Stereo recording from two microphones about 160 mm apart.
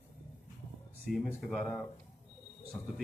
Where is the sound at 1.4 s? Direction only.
5° left (ahead or behind).